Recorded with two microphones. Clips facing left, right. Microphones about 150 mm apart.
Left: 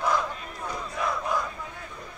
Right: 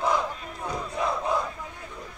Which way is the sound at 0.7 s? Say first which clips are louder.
Right 2 dB; 25° right (ahead or behind).